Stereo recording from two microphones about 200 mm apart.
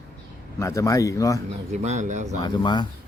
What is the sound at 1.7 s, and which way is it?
Speech, 35° right (ahead or behind).